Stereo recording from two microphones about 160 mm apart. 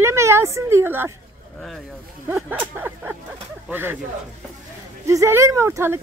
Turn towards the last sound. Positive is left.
turn(degrees=-15)  # may be behind; listen again after turning